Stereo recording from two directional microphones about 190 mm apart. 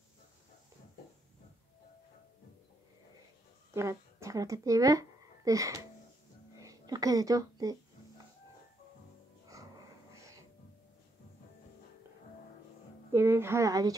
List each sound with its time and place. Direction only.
3.7 s speech: 15° right (ahead or behind)
6.5 s a sound: 20° right (ahead or behind)
9.5 s dog: 15° right (ahead or behind)
13.1 s speech: 15° right (ahead or behind)